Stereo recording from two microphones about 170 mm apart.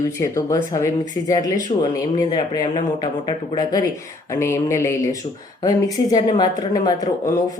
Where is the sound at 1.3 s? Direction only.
20° left (ahead or behind).